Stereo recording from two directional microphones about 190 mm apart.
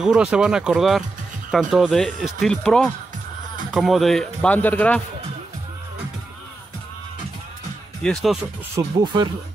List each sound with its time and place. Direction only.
0.0 s speech: 5° right (ahead or behind)
8.0 s speech: centre (ahead or behind)
8.7 s speech: 20° right (ahead or behind)